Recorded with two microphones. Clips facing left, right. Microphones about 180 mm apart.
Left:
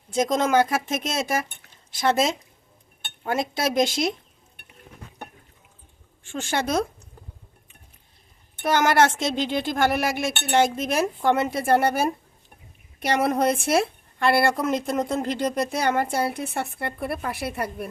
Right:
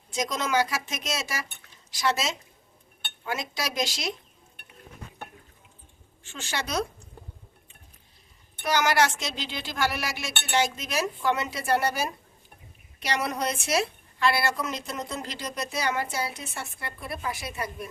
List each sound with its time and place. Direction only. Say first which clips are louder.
0.1 s a woman's voice: left 7 dB; 50° left (ahead or behind)
6.2 s a woman's voice: left 8 dB; 50° left (ahead or behind)
8.5 s a woman's voice: left 4 dB; 50° left (ahead or behind)